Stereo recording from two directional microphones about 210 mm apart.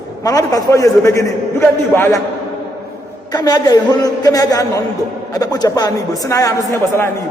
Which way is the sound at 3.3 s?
20° left (ahead or behind).